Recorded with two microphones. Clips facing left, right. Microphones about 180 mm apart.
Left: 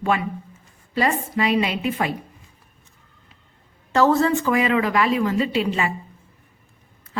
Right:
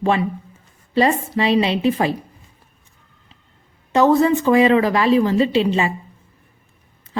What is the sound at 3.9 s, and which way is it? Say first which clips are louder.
A woman's voice: right 3 dB; 20° right (ahead or behind).